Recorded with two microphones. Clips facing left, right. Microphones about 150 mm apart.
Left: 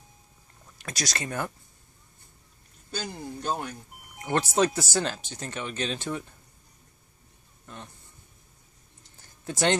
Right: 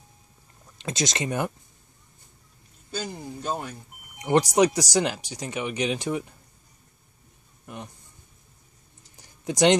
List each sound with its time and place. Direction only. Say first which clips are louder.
0.7 s speech: right 6 dB; 20° right (ahead or behind)
3.0 s a man's voice: right 1 dB; 5° right (ahead or behind)
4.2 s speech: right 5 dB; 15° right (ahead or behind)
7.6 s speech: right 5 dB; 15° right (ahead or behind)
9.1 s a sound: right 5 dB; 15° right (ahead or behind)